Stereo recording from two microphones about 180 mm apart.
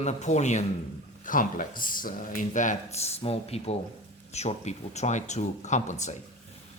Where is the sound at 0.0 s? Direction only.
40° left (ahead or behind).